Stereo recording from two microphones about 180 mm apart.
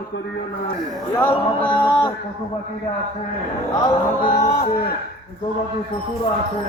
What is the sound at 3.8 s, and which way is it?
Music, 25° left (ahead or behind).